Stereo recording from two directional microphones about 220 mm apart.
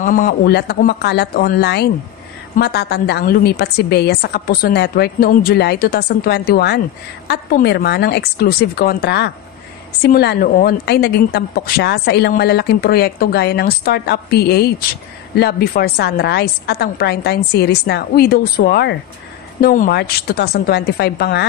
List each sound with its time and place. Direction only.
0.0 s a woman's voice: 40° left (ahead or behind)